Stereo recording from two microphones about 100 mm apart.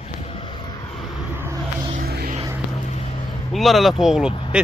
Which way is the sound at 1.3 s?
20° right (ahead or behind).